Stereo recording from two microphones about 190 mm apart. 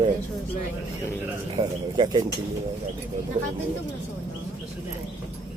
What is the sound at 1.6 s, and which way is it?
Speech, 25° right (ahead or behind).